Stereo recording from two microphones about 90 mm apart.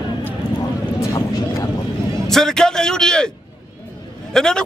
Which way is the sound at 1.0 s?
40° left (ahead or behind).